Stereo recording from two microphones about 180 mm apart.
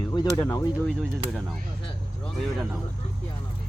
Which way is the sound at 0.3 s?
20° left (ahead or behind).